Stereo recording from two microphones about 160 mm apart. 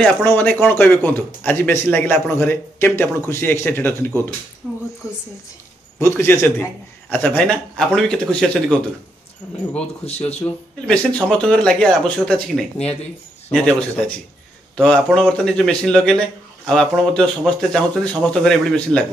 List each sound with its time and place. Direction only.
0.0 s a man's voice: 10° left (ahead or behind)
4.6 s speech: 5° right (ahead or behind)
5.0 s a woman's voice: 20° left (ahead or behind)
10.0 s speech: 40° left (ahead or behind)
10.4 s speech: 5° left (ahead or behind)